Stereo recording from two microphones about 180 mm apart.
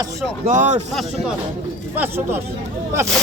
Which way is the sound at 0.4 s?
45° right (ahead or behind).